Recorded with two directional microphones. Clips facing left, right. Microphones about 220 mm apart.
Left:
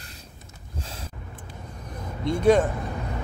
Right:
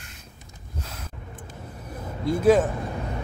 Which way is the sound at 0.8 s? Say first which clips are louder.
Left 1 dB; 30° left (ahead or behind).